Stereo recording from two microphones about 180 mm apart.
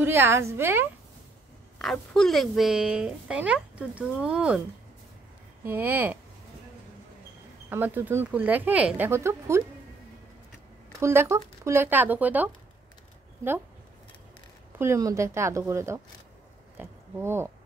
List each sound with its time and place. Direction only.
0.0 s speech: 10° right (ahead or behind)
1.8 s speech: centre (ahead or behind)
5.6 s speech: 10° right (ahead or behind)
7.7 s speech: 10° right (ahead or behind)
11.0 s speech: 15° right (ahead or behind)
14.8 s speech: 15° right (ahead or behind)
16.7 s oink: 15° right (ahead or behind)